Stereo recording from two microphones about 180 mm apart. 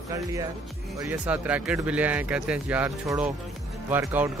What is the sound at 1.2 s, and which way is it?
A man's voice, 5° right (ahead or behind).